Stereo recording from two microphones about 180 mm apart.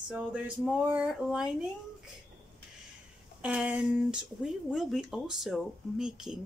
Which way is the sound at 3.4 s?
5° right (ahead or behind).